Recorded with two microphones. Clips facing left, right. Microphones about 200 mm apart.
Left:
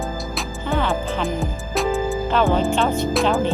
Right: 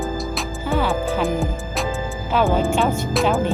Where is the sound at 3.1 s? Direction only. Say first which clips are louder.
Even; centre (ahead or behind).